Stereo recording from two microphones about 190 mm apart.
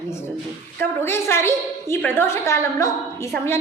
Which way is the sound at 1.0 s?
10° left (ahead or behind).